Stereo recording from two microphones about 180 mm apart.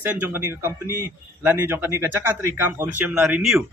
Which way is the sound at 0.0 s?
10° right (ahead or behind).